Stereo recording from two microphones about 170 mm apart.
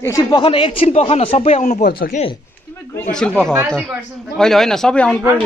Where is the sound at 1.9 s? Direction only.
60° left (ahead or behind).